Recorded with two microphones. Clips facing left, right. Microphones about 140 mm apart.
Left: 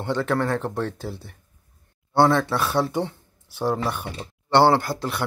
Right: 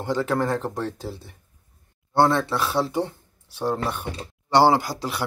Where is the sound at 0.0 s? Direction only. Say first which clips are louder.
Even; 5° right (ahead or behind).